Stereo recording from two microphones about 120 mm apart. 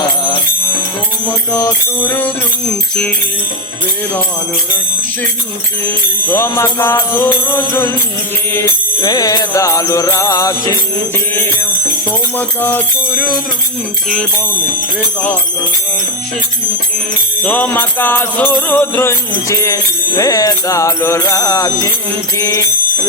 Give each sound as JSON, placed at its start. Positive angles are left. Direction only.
{"t": 1.5, "sound": "jingle bell", "side_deg": 15}
{"t": 6.3, "sound": "music", "side_deg": 20}
{"t": 9.0, "sound": "music", "side_deg": 35}
{"t": 12.4, "sound": "jingle bell", "side_deg": 15}
{"t": 17.4, "sound": "jingle bell", "side_deg": 15}
{"t": 19.5, "sound": "music", "side_deg": 25}